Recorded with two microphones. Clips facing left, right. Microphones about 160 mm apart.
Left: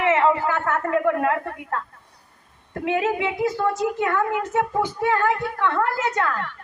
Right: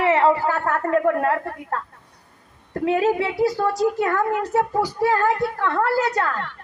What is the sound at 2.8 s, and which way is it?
A woman's voice, 35° right (ahead or behind).